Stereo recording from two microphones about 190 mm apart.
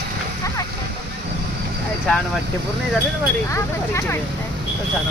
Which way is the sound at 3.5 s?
15° left (ahead or behind).